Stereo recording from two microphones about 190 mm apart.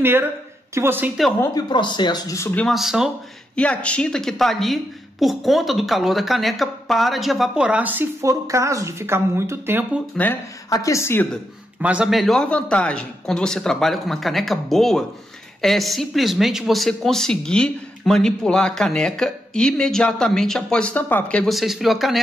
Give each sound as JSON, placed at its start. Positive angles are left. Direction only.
{"t": 0.0, "sound": "speech", "side_deg": -10}
{"t": 1.4, "sound": "speech", "side_deg": 20}
{"t": 10.1, "sound": "speech", "side_deg": 15}
{"t": 11.8, "sound": "speech", "side_deg": -5}